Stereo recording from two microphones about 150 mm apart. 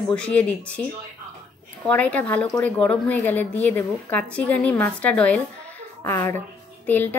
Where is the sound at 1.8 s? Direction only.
10° left (ahead or behind).